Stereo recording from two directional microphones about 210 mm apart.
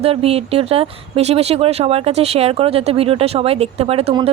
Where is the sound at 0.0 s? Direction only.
30° right (ahead or behind).